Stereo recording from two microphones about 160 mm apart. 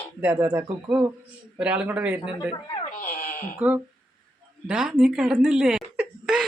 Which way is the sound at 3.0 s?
55° left (ahead or behind).